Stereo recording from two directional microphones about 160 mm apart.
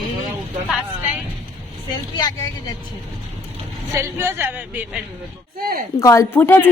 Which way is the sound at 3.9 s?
15° right (ahead or behind).